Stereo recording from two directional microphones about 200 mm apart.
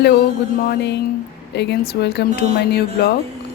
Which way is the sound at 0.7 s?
55° left (ahead or behind).